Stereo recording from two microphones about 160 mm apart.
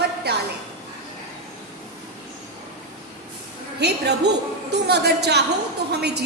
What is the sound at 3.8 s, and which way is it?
A woman's voice, 90° right.